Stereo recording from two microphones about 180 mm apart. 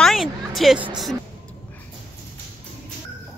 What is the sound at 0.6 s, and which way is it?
Speech, centre (ahead or behind).